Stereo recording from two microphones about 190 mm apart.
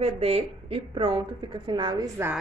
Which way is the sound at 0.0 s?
30° right (ahead or behind).